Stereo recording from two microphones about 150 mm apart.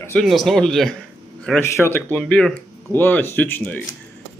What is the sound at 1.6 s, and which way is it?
Speech, 15° left (ahead or behind).